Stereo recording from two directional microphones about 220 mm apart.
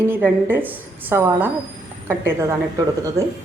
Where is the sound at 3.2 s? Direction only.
15° right (ahead or behind).